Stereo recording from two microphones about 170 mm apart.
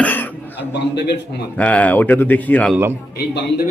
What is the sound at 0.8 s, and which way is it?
Speech, 80° left.